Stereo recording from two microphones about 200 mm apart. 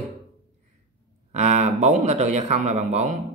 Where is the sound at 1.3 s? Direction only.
35° right (ahead or behind).